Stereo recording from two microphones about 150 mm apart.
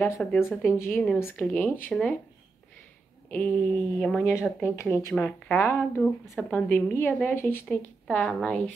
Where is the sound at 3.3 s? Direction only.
10° left (ahead or behind).